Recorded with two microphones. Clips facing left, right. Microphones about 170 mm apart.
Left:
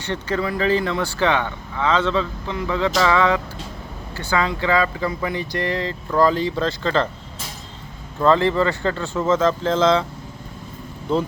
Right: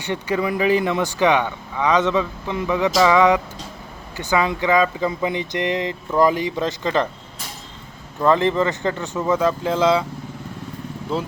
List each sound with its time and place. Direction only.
0.0 s speech: 15° right (ahead or behind)
8.2 s speech: 15° right (ahead or behind)